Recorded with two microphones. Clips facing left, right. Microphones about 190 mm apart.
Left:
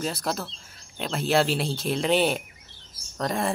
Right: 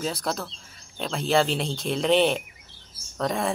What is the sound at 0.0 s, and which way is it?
Speech, centre (ahead or behind).